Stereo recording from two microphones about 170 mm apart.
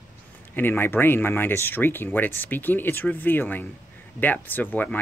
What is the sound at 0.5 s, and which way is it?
Speech, 10° left (ahead or behind).